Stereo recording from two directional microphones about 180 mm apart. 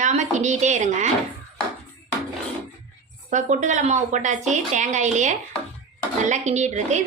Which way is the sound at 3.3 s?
40° right (ahead or behind).